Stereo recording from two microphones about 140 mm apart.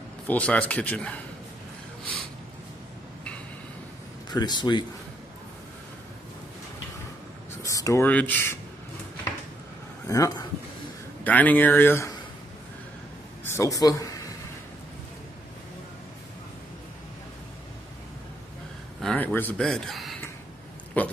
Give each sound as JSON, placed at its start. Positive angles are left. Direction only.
{"t": 0.3, "sound": "a man's voice", "side_deg": 10}
{"t": 4.3, "sound": "speech", "side_deg": 30}
{"t": 7.6, "sound": "a sound", "side_deg": 20}
{"t": 8.1, "sound": "a man's voice", "side_deg": 10}
{"t": 10.0, "sound": "speech", "side_deg": 25}
{"t": 11.2, "sound": "a man's voice", "side_deg": 10}
{"t": 13.4, "sound": "a man's voice", "side_deg": 20}
{"t": 18.9, "sound": "speech", "side_deg": 10}
{"t": 19.6, "sound": "speech", "side_deg": 0}
{"t": 21.0, "sound": "a man's voice", "side_deg": 10}